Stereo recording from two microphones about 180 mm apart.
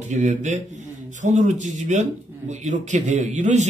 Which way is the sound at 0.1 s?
45° right (ahead or behind).